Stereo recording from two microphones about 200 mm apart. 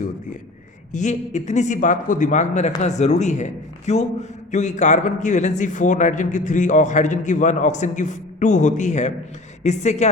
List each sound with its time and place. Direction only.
0.9 s speech: 35° left (ahead or behind)